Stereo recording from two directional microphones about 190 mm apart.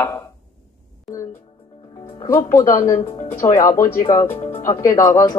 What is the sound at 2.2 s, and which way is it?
A woman's voice, 10° left (ahead or behind).